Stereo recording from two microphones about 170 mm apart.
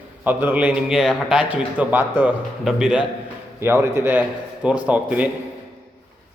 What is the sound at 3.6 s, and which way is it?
A man's voice, 15° right (ahead or behind).